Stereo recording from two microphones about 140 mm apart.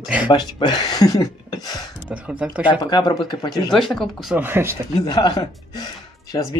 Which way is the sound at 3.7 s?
Centre (ahead or behind).